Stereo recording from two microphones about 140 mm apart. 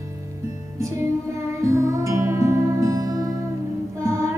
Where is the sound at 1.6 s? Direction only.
20° right (ahead or behind).